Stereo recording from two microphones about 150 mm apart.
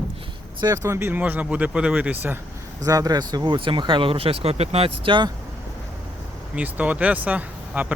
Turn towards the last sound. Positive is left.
turn(degrees=-10)  # may be behind; listen again after turning